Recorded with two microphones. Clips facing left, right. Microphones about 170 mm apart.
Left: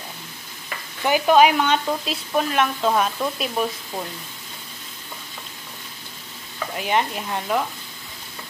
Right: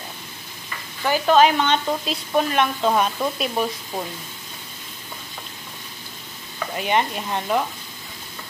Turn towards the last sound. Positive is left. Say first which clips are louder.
# right 1 dB
turn(degrees=-5)  # may be behind; listen again after turning